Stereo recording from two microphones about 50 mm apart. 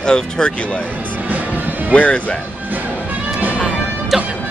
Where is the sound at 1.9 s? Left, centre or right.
Left.